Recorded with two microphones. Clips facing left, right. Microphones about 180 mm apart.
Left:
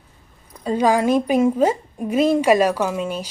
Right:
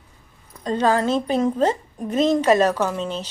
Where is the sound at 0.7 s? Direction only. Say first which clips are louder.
Left 2 dB; 10° left (ahead or behind).